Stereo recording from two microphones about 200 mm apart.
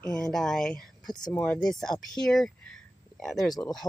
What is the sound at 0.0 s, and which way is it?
Speech, 5° left (ahead or behind).